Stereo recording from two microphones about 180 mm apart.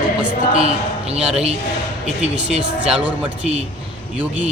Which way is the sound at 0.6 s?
35° right (ahead or behind).